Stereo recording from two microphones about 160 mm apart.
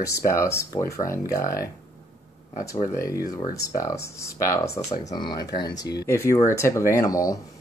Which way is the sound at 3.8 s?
20° left (ahead or behind).